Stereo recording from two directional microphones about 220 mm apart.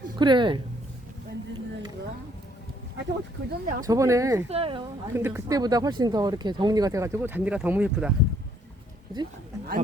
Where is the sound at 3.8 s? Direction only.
15° right (ahead or behind).